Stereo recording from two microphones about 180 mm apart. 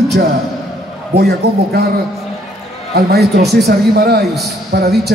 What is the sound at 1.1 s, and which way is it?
Speech, 60° right (ahead or behind).